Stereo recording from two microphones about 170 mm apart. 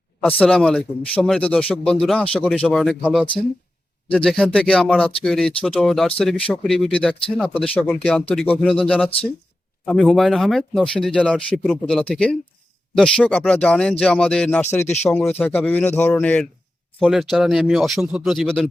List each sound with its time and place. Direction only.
0.2 s a man's voice: 10° left (ahead or behind)
7.5 s speech: 35° left (ahead or behind)
7.8 s a man's voice: 5° left (ahead or behind)